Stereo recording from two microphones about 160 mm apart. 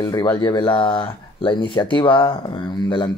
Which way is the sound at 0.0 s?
25° left (ahead or behind).